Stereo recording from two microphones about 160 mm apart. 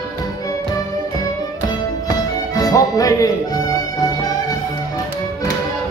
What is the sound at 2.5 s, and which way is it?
Music, 20° left (ahead or behind).